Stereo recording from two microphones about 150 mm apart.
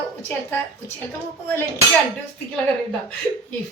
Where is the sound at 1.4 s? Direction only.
15° left (ahead or behind).